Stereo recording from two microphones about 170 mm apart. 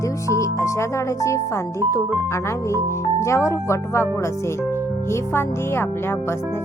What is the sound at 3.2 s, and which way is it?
Speech, 15° left (ahead or behind).